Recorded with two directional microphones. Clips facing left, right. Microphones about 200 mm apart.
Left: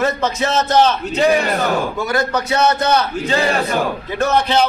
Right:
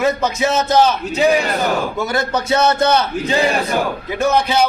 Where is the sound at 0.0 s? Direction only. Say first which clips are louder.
Right 1 dB; 10° right (ahead or behind).